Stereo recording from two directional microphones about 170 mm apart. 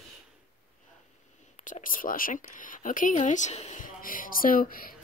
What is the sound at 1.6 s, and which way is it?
Speech, 50° left (ahead or behind).